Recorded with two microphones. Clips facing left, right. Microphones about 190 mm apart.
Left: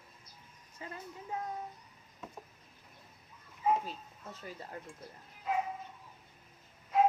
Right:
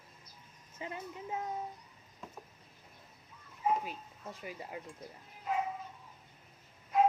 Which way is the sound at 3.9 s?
10° right (ahead or behind).